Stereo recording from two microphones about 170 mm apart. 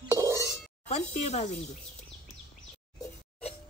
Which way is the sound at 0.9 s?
40° left (ahead or behind).